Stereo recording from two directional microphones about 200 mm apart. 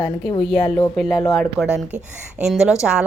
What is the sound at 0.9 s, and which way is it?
A woman's voice, centre (ahead or behind).